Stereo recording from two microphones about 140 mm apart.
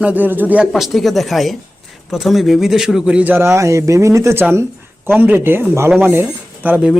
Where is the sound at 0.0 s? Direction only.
10° right (ahead or behind).